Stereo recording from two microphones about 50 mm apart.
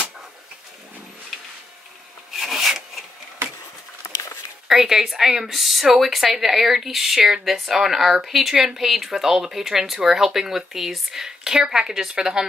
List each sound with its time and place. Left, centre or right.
2.3 s rub: centre
4.6 s speech: centre